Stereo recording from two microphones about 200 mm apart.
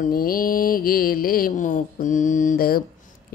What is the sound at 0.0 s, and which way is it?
Speech, 45° left (ahead or behind).